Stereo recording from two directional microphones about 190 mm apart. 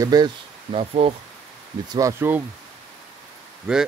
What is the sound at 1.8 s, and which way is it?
Speech, 20° right (ahead or behind).